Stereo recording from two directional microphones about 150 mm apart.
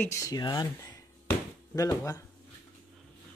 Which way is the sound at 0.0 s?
20° left (ahead or behind).